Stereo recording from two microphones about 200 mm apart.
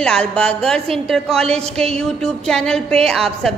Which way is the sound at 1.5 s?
30° right (ahead or behind).